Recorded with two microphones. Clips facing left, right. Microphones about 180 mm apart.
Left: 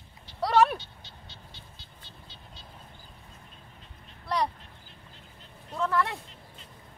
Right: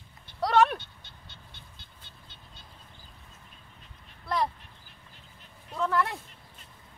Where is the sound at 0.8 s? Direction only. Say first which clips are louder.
Left 3 dB; 55° right (ahead or behind).